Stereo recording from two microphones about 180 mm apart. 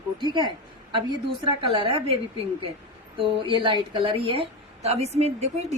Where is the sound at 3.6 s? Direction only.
25° right (ahead or behind).